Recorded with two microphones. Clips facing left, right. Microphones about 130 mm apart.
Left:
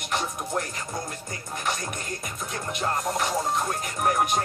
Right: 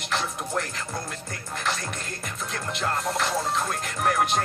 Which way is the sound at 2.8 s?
15° left (ahead or behind).